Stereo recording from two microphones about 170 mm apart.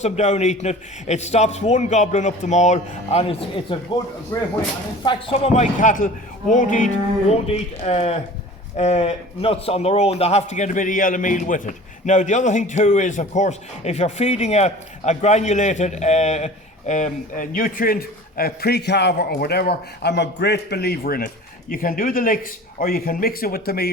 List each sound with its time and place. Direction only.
0.0 s a man's voice: 40° left (ahead or behind); by 4.5 s 20° left (ahead or behind)
5.0 s a man's voice: 35° left (ahead or behind)
5.8 s a man's voice: 50° left (ahead or behind)